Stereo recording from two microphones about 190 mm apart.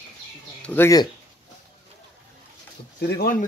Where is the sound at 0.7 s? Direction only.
15° left (ahead or behind).